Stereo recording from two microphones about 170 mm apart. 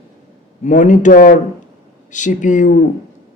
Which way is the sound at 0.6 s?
45° left (ahead or behind).